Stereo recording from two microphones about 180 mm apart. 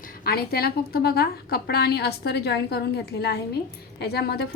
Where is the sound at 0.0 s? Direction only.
55° left (ahead or behind).